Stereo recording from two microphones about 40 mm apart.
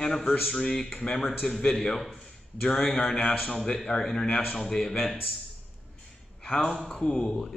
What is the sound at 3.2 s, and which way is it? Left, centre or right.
Speech, left.